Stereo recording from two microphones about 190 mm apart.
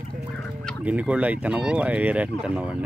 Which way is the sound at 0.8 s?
5° right (ahead or behind).